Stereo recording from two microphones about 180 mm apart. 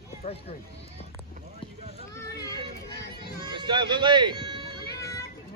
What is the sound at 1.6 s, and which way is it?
Boat, 30° left (ahead or behind).